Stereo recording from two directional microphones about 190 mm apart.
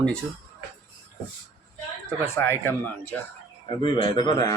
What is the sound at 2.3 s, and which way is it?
Speech, 15° left (ahead or behind).